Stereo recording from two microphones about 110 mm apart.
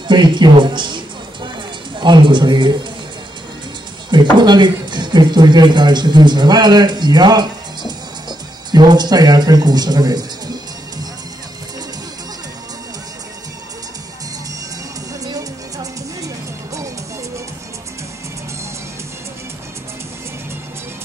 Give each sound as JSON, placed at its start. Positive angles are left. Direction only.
{"t": 0.1, "sound": "a man's voice", "side_deg": -45}
{"t": 4.1, "sound": "speech", "side_deg": -45}
{"t": 15.2, "sound": "music", "side_deg": -35}